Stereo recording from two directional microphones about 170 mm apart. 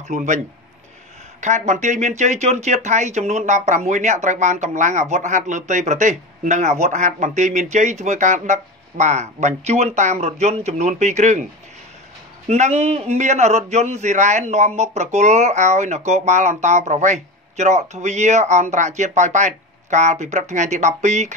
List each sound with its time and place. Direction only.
0.1 s speech: 45° right (ahead or behind)
1.4 s speech: 45° right (ahead or behind)
12.4 s speech: 40° right (ahead or behind)